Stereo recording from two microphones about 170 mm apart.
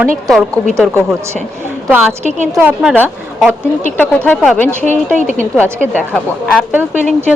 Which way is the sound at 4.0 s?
10° left (ahead or behind).